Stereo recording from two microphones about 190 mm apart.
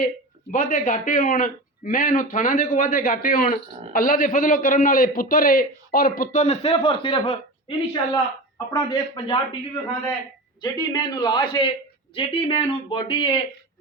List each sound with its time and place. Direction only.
0.5 s a man's voice: 45° left (ahead or behind); by 9.6 s 25° left (ahead or behind)
10.6 s speech: 20° left (ahead or behind)